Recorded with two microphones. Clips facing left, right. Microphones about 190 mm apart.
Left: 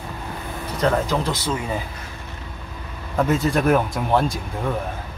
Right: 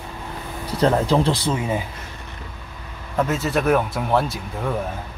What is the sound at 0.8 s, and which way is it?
Speech, 30° right (ahead or behind).